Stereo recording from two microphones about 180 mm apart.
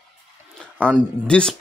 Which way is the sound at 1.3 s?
5° left (ahead or behind).